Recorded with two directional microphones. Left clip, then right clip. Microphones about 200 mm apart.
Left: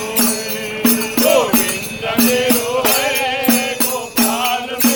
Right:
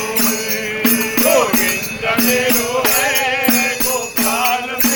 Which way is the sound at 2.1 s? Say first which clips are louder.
Left 2 dB; 25° right (ahead or behind).